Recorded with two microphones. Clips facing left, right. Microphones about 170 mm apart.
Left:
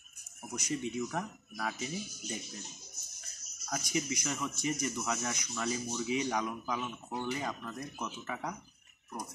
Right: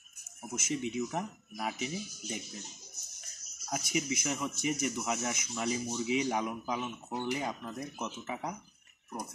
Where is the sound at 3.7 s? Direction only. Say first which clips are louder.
Right 1 dB; 15° right (ahead or behind).